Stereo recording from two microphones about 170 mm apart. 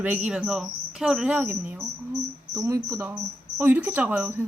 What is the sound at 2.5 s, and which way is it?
Speech, 20° right (ahead or behind).